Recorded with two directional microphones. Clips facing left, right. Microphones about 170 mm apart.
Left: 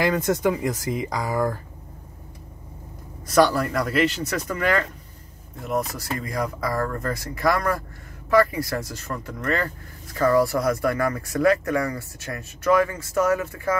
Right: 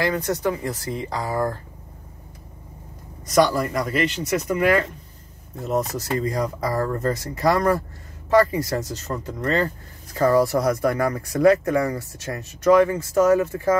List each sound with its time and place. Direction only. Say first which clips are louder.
0.0 s speech: left 2 dB; 20° left (ahead or behind)
3.3 s speech: even; centre (ahead or behind)
4.5 s speech: right 4 dB; 15° right (ahead or behind)
5.6 s speech: right 3 dB; 30° right (ahead or behind)